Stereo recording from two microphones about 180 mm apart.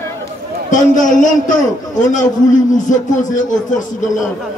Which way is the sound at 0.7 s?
45° left (ahead or behind).